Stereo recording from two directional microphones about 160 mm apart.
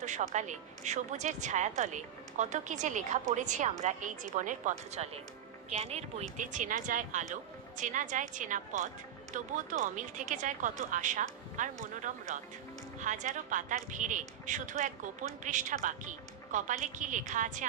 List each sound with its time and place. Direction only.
0.0 s a woman's voice: 50° right (ahead or behind)
6.3 s a woman's voice: 55° right (ahead or behind)